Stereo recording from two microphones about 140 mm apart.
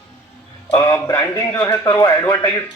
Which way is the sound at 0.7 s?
25° left (ahead or behind).